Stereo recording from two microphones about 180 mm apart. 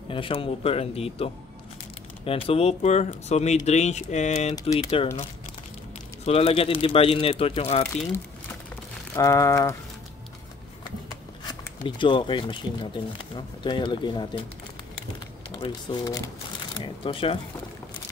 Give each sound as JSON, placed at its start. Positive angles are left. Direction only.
{"t": 0.1, "sound": "speech", "side_deg": 30}
{"t": 6.2, "sound": "speech", "side_deg": 35}
{"t": 9.1, "sound": "a sound", "side_deg": 15}
{"t": 12.0, "sound": "speech", "side_deg": 25}
{"t": 15.5, "sound": "speech", "side_deg": 25}